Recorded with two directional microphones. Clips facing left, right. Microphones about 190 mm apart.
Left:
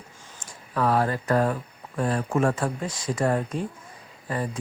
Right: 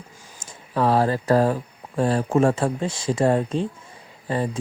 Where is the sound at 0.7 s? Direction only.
30° right (ahead or behind).